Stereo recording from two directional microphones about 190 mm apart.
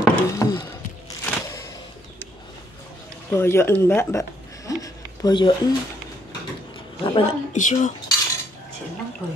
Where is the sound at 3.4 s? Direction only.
15° left (ahead or behind).